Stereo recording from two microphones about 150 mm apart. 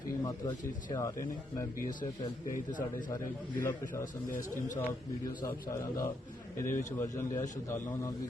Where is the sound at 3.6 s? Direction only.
20° left (ahead or behind).